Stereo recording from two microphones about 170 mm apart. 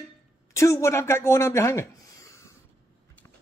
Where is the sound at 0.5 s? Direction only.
15° left (ahead or behind).